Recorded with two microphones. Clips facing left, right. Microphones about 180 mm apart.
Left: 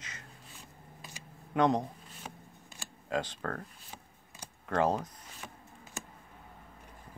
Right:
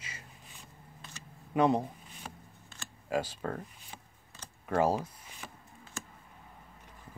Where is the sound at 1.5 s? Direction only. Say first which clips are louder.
Right 1 dB; 5° right (ahead or behind).